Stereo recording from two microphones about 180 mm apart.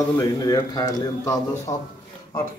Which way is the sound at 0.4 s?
20° left (ahead or behind).